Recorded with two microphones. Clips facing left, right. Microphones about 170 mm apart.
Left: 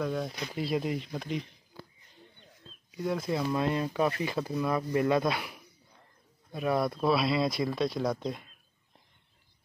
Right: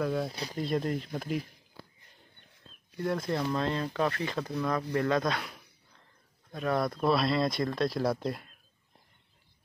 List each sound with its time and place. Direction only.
0.0 s speech: centre (ahead or behind)
2.9 s speech: centre (ahead or behind)
3.5 s speech: 15° left (ahead or behind)
4.3 s speech: 5° left (ahead or behind)